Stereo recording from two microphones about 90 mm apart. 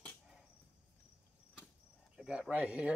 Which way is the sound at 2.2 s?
15° right (ahead or behind).